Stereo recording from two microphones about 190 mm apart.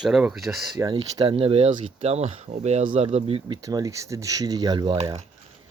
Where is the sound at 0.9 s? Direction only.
25° right (ahead or behind).